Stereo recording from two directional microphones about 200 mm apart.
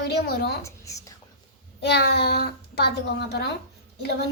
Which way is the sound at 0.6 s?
15° left (ahead or behind).